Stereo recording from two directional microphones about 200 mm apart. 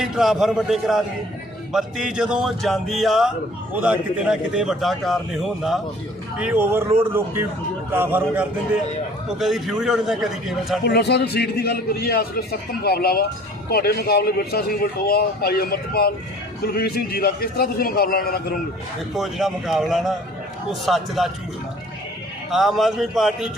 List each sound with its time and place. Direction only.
0.0 s a man's voice: centre (ahead or behind)
10.8 s a man's voice: 55° left (ahead or behind)
19.1 s speech: centre (ahead or behind)
22.5 s speech: centre (ahead or behind)